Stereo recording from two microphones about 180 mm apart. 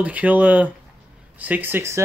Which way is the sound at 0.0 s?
10° right (ahead or behind).